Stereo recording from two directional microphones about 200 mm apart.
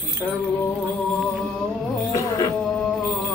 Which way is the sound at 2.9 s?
Centre (ahead or behind).